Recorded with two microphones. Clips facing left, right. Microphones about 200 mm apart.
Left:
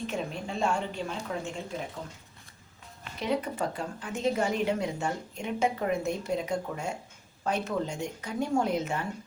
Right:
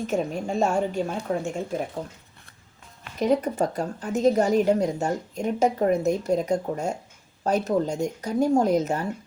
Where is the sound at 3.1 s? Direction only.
45° right (ahead or behind).